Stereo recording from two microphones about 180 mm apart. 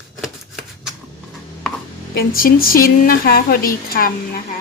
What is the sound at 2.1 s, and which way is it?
A woman's voice, 55° left (ahead or behind).